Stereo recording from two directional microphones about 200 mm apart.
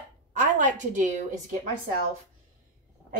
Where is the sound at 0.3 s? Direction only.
40° right (ahead or behind).